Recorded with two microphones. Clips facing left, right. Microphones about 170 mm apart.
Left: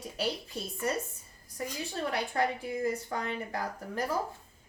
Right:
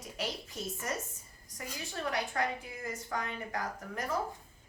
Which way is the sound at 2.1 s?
30° left (ahead or behind).